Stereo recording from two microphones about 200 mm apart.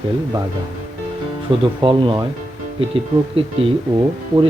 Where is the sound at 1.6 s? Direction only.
25° right (ahead or behind).